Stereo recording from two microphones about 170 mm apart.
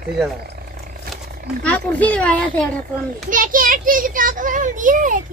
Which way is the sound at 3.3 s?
55° right (ahead or behind).